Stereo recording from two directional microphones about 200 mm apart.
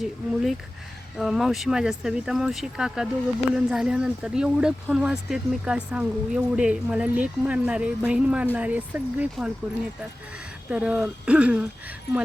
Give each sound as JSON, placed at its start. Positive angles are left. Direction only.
{"t": 0.0, "sound": "speech", "side_deg": 0}
{"t": 10.7, "sound": "speech", "side_deg": -5}